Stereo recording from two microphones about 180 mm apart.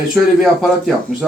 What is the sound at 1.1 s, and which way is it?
Speech, centre (ahead or behind).